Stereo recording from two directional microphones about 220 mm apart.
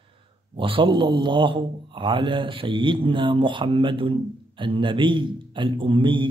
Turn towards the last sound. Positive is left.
turn(degrees=-20)  # may be behind; listen again after turning